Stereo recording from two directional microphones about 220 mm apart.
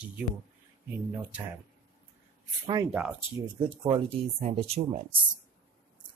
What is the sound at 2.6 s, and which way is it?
Speech, 20° right (ahead or behind).